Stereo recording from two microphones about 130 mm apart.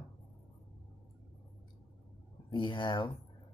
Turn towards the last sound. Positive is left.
turn(degrees=40)  # may be behind; listen again after turning